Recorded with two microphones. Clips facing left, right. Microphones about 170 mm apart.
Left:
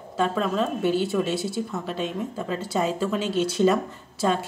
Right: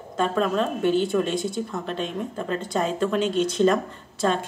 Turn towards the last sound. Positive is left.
turn(degrees=10)  # may be behind; listen again after turning